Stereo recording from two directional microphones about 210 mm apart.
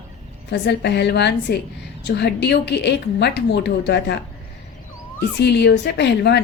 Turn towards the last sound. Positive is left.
turn(degrees=55)  # may be behind; listen again after turning